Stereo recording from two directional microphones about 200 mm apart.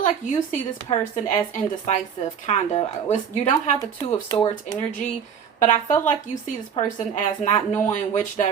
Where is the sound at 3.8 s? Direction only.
15° left (ahead or behind).